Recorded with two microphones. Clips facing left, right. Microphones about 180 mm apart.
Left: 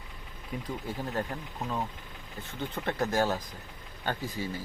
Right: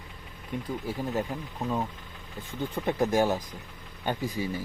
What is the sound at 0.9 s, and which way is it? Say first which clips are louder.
Speech: right 3 dB; 10° right (ahead or behind).